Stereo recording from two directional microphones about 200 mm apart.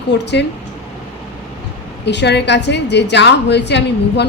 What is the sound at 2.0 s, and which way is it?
A woman's voice, 60° left (ahead or behind).